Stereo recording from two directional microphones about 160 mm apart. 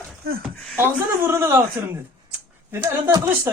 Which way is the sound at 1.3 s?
15° right (ahead or behind).